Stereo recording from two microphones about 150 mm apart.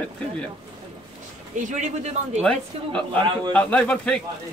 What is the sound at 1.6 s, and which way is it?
Speech, 50° right (ahead or behind).